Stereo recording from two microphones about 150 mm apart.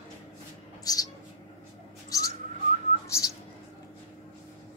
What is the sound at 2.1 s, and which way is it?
Whistling, 25° left (ahead or behind).